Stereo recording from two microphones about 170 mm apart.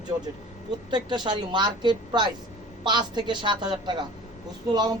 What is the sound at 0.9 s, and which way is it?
Speech, 25° right (ahead or behind).